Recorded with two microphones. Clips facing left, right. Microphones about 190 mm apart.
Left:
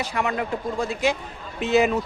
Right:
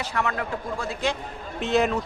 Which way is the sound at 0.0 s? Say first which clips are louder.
Left 2 dB; 15° left (ahead or behind).